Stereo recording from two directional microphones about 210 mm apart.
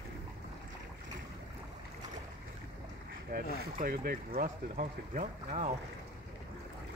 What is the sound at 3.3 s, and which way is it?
Speech, 45° right (ahead or behind).